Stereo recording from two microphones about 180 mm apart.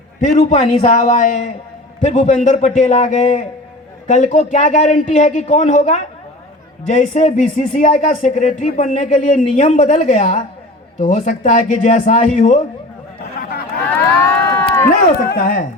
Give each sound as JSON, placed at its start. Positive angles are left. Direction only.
{"t": 0.2, "sound": "a man's voice", "side_deg": 40}
{"t": 14.5, "sound": "run", "side_deg": 10}
{"t": 14.8, "sound": "speech", "side_deg": 50}